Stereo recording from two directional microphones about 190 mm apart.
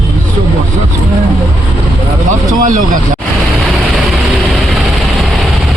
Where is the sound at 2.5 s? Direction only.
40° right (ahead or behind).